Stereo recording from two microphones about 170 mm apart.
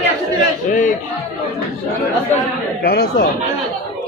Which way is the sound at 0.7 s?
50° left (ahead or behind).